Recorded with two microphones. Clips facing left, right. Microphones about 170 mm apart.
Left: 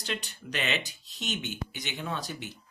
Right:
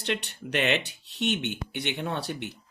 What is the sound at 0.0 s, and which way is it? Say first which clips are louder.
Speech: right 5 dB; 65° right (ahead or behind).